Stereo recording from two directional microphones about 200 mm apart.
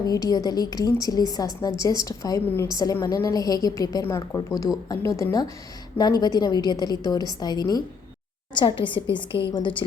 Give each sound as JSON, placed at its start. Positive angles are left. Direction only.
{"t": 0.0, "sound": "a woman's voice", "side_deg": 20}